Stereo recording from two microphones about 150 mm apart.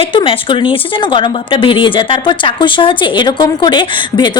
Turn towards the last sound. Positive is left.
turn(degrees=30)  # may be behind; listen again after turning